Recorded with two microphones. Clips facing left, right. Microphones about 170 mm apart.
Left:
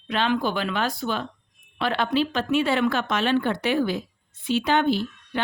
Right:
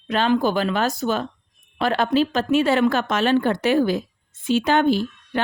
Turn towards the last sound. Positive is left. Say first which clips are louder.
# right 3 dB
turn(degrees=-45)  # may be behind; listen again after turning